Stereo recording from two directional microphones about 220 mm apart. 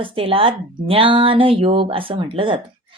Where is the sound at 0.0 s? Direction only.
25° right (ahead or behind).